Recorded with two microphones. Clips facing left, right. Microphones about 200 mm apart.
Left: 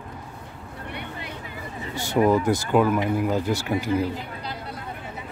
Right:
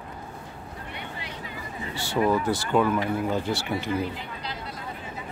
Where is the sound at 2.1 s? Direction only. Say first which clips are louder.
Left 4 dB; 15° left (ahead or behind).